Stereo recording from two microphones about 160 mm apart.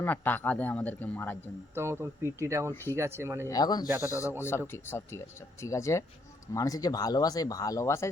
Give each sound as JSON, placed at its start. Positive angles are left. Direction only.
{"t": 0.0, "sound": "speech", "side_deg": 10}
{"t": 1.7, "sound": "speech", "side_deg": -15}
{"t": 3.4, "sound": "speech", "side_deg": 25}
{"t": 3.8, "sound": "speech", "side_deg": -20}
{"t": 4.4, "sound": "speech", "side_deg": 15}